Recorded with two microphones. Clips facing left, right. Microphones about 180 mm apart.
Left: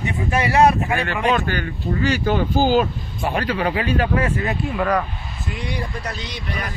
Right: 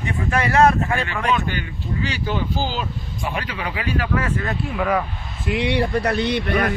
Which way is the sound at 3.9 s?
30° left (ahead or behind).